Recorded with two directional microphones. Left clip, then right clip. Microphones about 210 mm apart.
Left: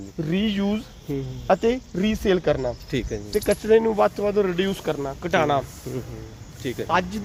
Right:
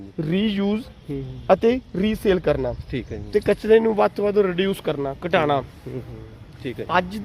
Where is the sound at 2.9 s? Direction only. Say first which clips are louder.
Left 3 dB; 15° left (ahead or behind).